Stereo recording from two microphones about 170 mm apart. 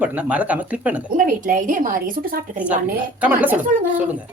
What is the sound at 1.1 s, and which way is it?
A woman's voice, 50° right (ahead or behind).